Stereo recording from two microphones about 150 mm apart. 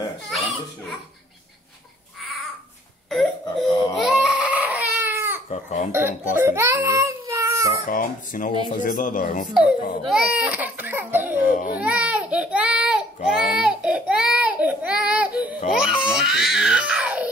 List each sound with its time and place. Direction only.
0.3 s baby laughter: centre (ahead or behind)
3.9 s baby cry: 5° right (ahead or behind)
5.5 s speech: 50° left (ahead or behind)
5.9 s a child's voice: 15° right (ahead or behind)
7.9 s speech: 65° left (ahead or behind)
9.5 s speech: 5° right (ahead or behind)
11.4 s speech: 60° left (ahead or behind)
11.8 s speech: 10° right (ahead or behind)